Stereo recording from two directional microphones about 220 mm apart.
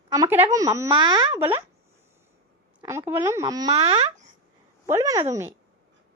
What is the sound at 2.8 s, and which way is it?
Speech, 10° right (ahead or behind).